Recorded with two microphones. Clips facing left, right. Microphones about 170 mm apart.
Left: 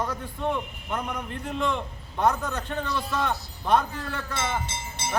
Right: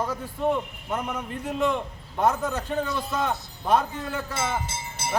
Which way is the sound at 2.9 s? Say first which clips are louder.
Even; 25° right (ahead or behind).